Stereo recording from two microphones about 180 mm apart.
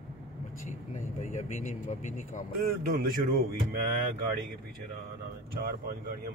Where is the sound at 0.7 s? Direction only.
40° left (ahead or behind).